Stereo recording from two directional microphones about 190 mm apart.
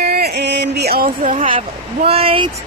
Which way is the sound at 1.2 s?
40° right (ahead or behind).